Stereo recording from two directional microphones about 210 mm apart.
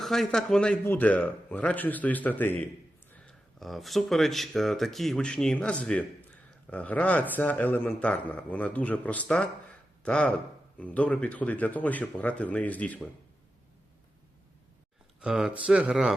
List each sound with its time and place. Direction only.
0.0 s speech: centre (ahead or behind)
15.2 s speech: 5° right (ahead or behind)